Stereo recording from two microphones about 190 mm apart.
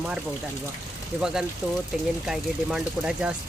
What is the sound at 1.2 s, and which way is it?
Speech, 5° right (ahead or behind).